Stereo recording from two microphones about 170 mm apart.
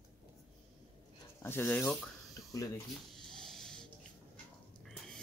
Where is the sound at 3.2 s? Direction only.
5° left (ahead or behind).